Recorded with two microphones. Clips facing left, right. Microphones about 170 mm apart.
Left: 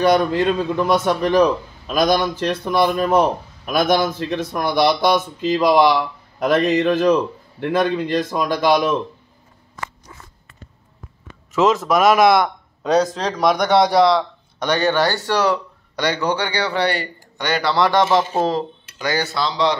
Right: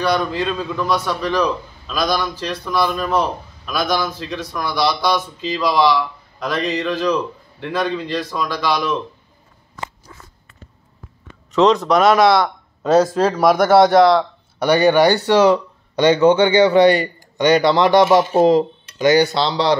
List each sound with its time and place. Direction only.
0.0 s a man's voice: 50° left (ahead or behind)
11.5 s speech: 5° left (ahead or behind)
12.8 s a man's voice: 5° right (ahead or behind); by 19.8 s 30° right (ahead or behind)